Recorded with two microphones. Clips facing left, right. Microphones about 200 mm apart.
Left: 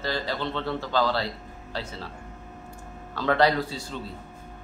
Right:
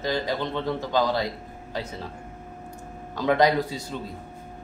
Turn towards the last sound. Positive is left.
turn(degrees=-15)  # may be behind; listen again after turning